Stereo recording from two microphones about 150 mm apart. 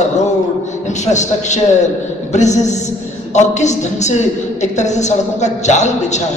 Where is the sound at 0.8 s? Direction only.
50° left (ahead or behind).